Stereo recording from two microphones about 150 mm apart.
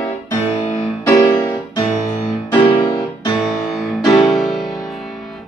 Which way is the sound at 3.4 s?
Centre (ahead or behind).